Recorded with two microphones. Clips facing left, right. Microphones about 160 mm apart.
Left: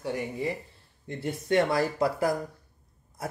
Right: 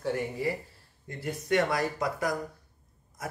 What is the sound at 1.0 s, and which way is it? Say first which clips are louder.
Speech: left 2 dB; 25° left (ahead or behind).